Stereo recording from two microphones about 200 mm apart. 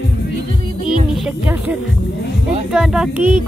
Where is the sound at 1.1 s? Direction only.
5° right (ahead or behind).